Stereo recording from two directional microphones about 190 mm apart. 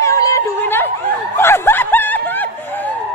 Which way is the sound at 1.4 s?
10° left (ahead or behind).